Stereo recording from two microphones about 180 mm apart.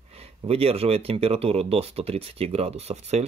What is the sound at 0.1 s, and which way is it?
Speech, 35° right (ahead or behind).